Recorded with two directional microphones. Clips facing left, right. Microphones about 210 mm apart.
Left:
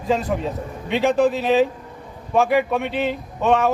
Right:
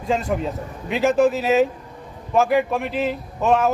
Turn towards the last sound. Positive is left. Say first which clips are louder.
# even
turn(degrees=0)  # may be behind; listen again after turning